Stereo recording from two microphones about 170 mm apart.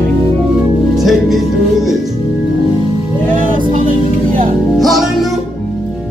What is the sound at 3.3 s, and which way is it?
Music, 50° right (ahead or behind).